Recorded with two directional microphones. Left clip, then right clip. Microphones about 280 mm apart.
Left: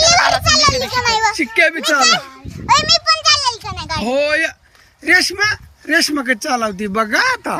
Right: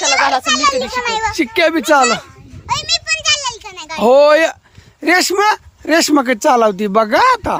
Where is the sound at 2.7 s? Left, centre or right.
Centre.